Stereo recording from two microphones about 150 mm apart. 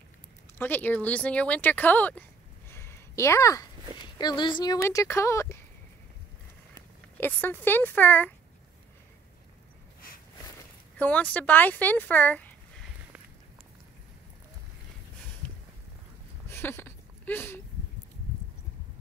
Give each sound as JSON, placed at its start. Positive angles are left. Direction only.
{"t": 0.6, "sound": "speech", "side_deg": 15}
{"t": 2.7, "sound": "a sound", "side_deg": 15}
{"t": 4.2, "sound": "speech", "side_deg": 30}
{"t": 4.8, "sound": "speech", "side_deg": 20}
{"t": 6.7, "sound": "speech", "side_deg": 15}
{"t": 11.0, "sound": "speech", "side_deg": 10}
{"t": 15.4, "sound": "a sound", "side_deg": 10}